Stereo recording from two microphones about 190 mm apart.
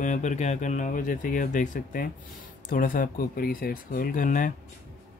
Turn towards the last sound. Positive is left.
turn(degrees=45)  # may be behind; listen again after turning